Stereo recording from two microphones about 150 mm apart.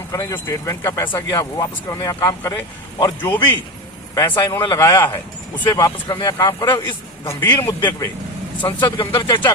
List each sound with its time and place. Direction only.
0.1 s speech: 20° left (ahead or behind)
1.3 s a man's voice: 25° left (ahead or behind)
8.6 s speech: 35° left (ahead or behind)